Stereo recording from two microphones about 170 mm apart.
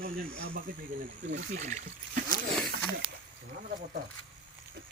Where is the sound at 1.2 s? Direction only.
90° right.